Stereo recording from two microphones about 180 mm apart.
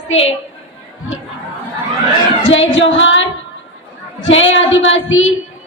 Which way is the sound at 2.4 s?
90° left.